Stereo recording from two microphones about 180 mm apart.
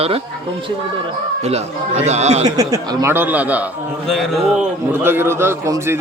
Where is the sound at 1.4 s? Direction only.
35° right (ahead or behind).